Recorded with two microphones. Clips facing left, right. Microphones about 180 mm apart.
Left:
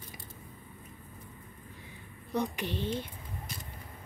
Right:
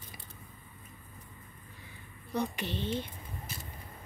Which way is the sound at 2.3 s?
15° left (ahead or behind).